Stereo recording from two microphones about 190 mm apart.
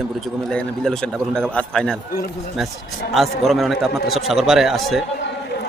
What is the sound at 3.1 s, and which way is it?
A man's voice, centre (ahead or behind).